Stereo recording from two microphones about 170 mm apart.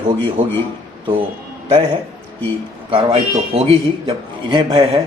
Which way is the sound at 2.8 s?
30° right (ahead or behind).